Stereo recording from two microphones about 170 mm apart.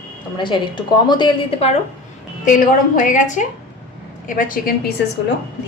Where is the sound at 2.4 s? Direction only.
55° left (ahead or behind).